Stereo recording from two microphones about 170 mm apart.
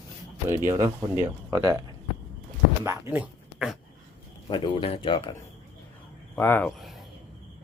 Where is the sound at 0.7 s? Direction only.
15° right (ahead or behind).